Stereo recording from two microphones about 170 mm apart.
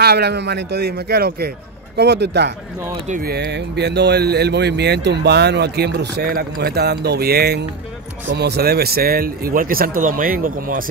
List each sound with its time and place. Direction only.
0.0 s speech: 70° right (ahead or behind)
2.0 s a man's voice: 85° right
3.1 s speech: 60° right (ahead or behind)